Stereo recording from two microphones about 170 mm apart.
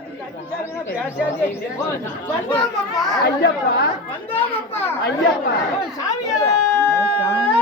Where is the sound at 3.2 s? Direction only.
70° left (ahead or behind).